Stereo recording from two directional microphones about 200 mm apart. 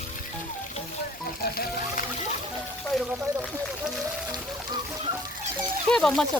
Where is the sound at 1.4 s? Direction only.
50° left (ahead or behind).